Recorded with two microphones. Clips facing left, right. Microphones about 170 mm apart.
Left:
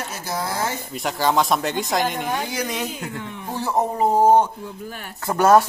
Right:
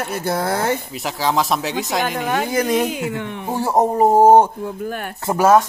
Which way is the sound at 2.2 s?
60° right (ahead or behind).